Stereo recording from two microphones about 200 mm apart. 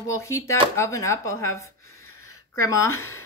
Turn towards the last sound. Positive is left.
turn(degrees=15)  # may be behind; listen again after turning